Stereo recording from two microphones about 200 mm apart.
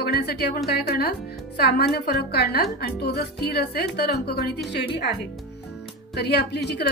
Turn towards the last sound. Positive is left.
turn(degrees=55)  # may be behind; listen again after turning